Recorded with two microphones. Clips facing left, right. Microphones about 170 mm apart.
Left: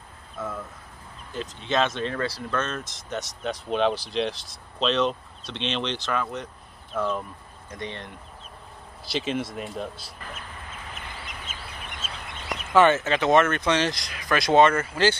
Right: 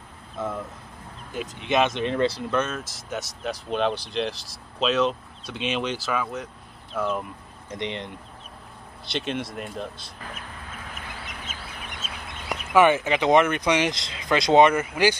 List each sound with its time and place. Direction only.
1.3 s speech: 15° right (ahead or behind)
2.7 s speech: 5° right (ahead or behind)
7.7 s speech: 20° right (ahead or behind)
9.0 s speech: centre (ahead or behind)
12.7 s speech: 10° right (ahead or behind)